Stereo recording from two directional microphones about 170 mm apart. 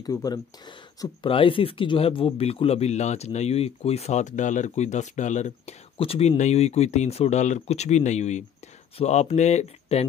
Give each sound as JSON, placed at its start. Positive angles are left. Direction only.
{"t": 0.0, "sound": "speech", "side_deg": 20}